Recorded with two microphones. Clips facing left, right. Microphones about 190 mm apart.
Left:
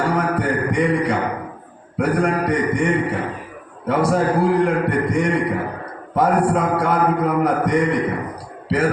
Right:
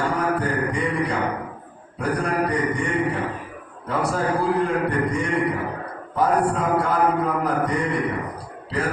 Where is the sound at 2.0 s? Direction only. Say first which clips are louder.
Left 4 dB; 90° left.